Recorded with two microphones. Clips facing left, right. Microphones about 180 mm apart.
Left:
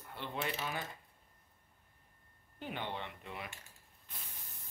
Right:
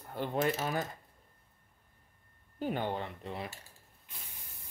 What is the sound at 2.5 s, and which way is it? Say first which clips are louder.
Speech: right 8 dB; 40° right (ahead or behind).